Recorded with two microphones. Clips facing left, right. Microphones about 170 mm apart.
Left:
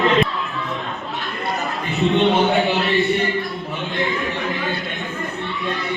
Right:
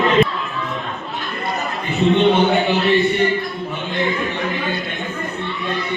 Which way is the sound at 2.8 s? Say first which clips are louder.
Right 3 dB; centre (ahead or behind).